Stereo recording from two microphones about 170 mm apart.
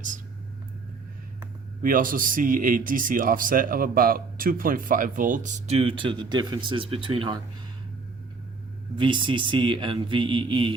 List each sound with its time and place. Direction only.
1.8 s a man's voice: 55° right (ahead or behind); by 7.3 s 30° right (ahead or behind)
9.0 s a man's voice: 30° right (ahead or behind)